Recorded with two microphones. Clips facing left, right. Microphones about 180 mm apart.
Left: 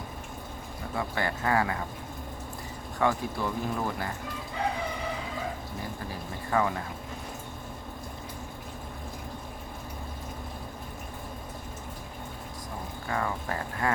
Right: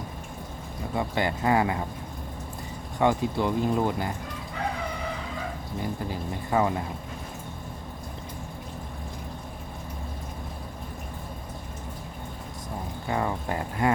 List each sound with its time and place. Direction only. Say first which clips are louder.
0.9 s speech: right 4 dB; 20° right (ahead or behind)
3.0 s speech: right 4 dB; 20° right (ahead or behind)
6.1 s speech: right 3 dB; 20° right (ahead or behind)
13.1 s speech: right 3 dB; 20° right (ahead or behind)